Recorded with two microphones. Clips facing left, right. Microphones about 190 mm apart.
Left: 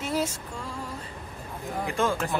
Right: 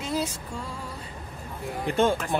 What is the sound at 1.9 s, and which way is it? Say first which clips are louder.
Speech: right 4 dB; 30° right (ahead or behind).